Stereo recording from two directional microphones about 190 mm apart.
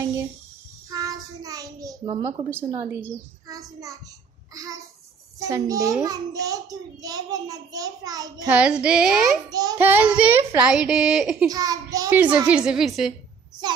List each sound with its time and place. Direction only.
0.8 s a sound: 20° right (ahead or behind)
2.5 s a child's voice: 15° right (ahead or behind)
5.5 s a child's voice: 20° right (ahead or behind)
8.5 s child singing: 5° right (ahead or behind)
9.5 s a child's voice: 20° right (ahead or behind)
10.6 s child singing: 5° right (ahead or behind)
11.4 s a child's voice: 20° right (ahead or behind); by 13.1 s centre (ahead or behind)